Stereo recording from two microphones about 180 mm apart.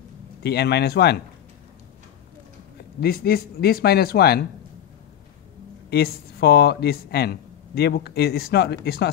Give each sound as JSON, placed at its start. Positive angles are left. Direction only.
{"t": 0.4, "sound": "speech", "side_deg": 65}
{"t": 3.0, "sound": "speech", "side_deg": 60}
{"t": 5.9, "sound": "speech", "side_deg": 65}